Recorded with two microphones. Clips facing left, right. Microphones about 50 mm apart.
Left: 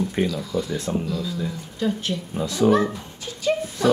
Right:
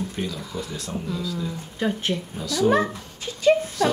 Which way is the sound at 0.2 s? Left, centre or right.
Left.